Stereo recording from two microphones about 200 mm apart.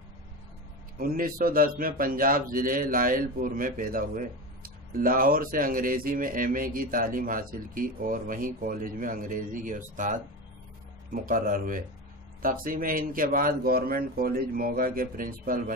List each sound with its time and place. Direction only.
0.9 s a man's voice: 45° right (ahead or behind)
11.2 s a man's voice: 45° right (ahead or behind)